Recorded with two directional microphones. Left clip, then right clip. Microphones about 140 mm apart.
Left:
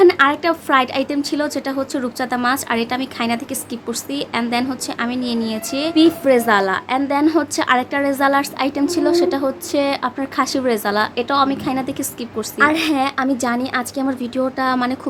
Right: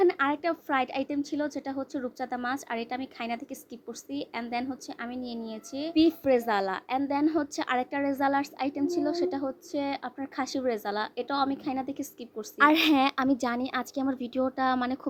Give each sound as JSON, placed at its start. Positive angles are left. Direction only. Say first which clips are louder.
{"t": 0.0, "sound": "a woman's voice", "louder": "left 12 dB", "side_deg": -30}
{"t": 5.9, "sound": "a woman's voice", "louder": "left 10 dB", "side_deg": -30}
{"t": 12.5, "sound": "a woman's voice", "louder": "left 6 dB", "side_deg": -75}